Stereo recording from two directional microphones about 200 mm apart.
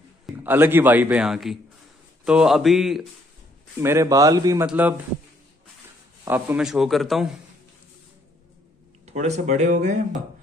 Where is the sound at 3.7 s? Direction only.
10° right (ahead or behind).